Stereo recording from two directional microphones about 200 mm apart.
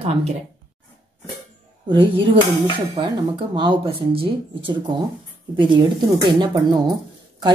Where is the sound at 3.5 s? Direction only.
25° right (ahead or behind).